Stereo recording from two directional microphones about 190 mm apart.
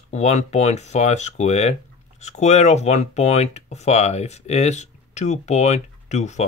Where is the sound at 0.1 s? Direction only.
35° left (ahead or behind).